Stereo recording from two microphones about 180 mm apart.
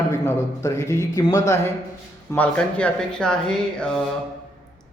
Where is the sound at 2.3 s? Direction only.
10° left (ahead or behind).